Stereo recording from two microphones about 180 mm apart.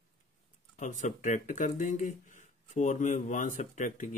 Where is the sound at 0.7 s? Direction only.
45° left (ahead or behind).